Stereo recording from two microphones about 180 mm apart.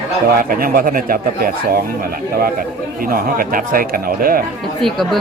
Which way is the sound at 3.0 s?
55° right (ahead or behind).